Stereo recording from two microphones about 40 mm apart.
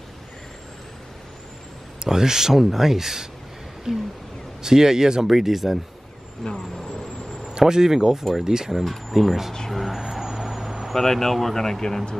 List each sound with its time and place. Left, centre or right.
2.0 s speech: centre
6.5 s speech: centre
6.9 s vehicle: centre
7.5 s speech: centre
8.2 s speech: centre
9.7 s vehicle: centre
10.9 s speech: centre